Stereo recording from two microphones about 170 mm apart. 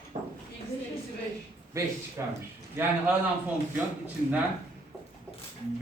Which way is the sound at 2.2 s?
15° right (ahead or behind).